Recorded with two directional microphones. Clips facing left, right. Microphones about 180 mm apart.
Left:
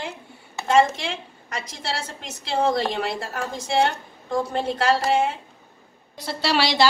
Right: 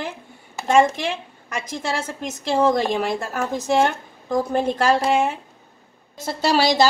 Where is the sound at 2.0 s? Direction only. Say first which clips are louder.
Right 7 dB; 50° right (ahead or behind).